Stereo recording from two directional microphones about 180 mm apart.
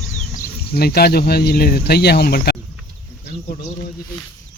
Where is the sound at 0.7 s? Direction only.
60° left (ahead or behind).